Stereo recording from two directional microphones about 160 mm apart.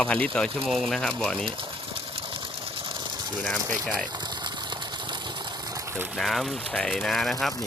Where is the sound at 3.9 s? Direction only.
25° right (ahead or behind).